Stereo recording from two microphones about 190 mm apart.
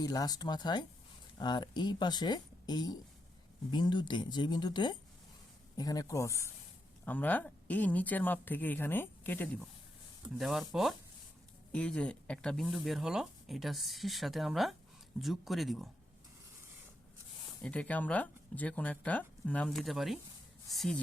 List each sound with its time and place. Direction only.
0.0 s speech: 20° left (ahead or behind)
10.2 s speech: centre (ahead or behind)
17.6 s speech: 5° left (ahead or behind)